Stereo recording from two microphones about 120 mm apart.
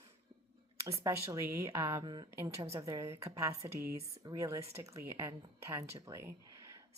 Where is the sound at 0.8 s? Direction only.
25° right (ahead or behind).